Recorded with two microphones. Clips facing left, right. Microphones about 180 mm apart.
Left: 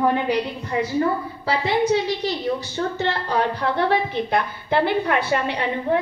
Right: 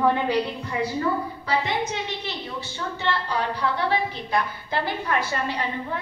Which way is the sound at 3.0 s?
50° left (ahead or behind).